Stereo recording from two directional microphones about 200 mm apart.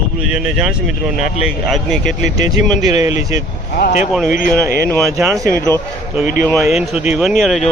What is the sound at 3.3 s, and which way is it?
Speech, 40° left (ahead or behind).